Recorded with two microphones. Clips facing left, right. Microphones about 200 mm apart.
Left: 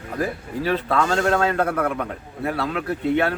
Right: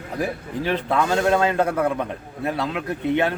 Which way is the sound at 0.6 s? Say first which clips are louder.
Even; 15° right (ahead or behind).